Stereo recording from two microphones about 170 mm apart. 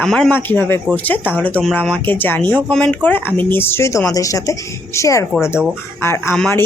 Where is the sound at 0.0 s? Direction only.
5° left (ahead or behind).